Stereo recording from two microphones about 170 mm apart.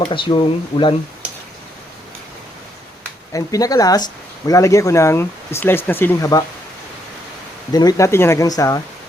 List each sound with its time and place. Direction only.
0.0 s speech: 30° left (ahead or behind)
3.3 s speech: 20° left (ahead or behind)
7.7 s speech: 25° left (ahead or behind)